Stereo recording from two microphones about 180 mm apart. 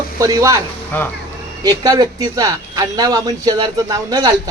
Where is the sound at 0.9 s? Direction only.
10° left (ahead or behind).